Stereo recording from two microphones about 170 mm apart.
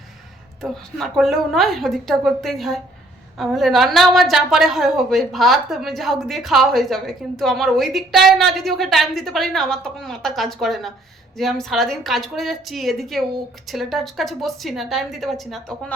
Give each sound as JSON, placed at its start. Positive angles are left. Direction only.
{"t": 0.6, "sound": "a woman's voice", "side_deg": 0}